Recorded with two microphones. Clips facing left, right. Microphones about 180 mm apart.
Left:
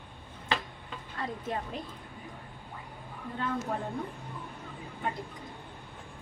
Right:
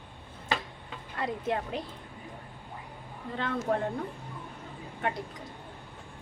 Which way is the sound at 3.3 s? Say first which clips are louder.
Right 3 dB; 80° right.